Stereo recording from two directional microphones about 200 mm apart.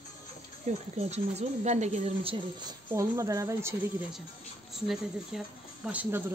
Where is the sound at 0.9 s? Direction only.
30° right (ahead or behind).